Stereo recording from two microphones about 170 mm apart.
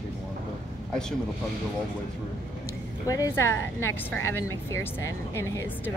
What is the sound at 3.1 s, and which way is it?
A woman's voice, 15° left (ahead or behind).